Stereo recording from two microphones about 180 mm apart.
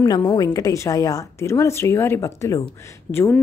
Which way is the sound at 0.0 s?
25° left (ahead or behind).